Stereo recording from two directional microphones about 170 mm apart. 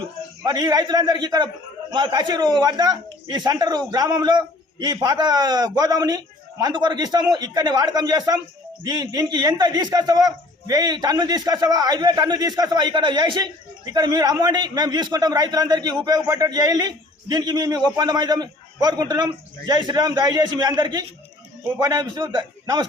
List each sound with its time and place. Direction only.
0.4 s speech: 25° right (ahead or behind)